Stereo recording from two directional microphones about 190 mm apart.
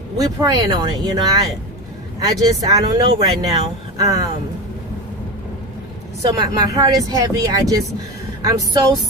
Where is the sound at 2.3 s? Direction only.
20° right (ahead or behind).